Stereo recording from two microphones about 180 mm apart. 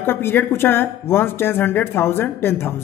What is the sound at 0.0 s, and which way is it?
Speech, 10° left (ahead or behind).